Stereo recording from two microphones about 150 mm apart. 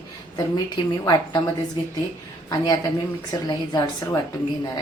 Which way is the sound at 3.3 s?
25° left (ahead or behind).